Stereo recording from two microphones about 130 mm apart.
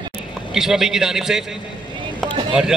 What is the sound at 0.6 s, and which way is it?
Speech, 5° right (ahead or behind).